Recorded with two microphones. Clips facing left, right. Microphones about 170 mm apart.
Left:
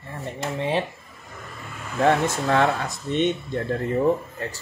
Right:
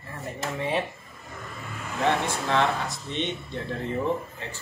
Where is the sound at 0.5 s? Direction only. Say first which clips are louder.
Left 3 dB; 30° left (ahead or behind).